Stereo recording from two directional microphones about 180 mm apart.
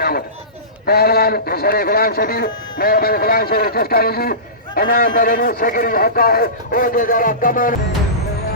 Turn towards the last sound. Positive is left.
turn(degrees=50)  # may be behind; listen again after turning